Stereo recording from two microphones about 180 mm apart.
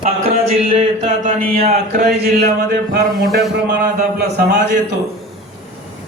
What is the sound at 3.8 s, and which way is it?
Speech, 55° right (ahead or behind).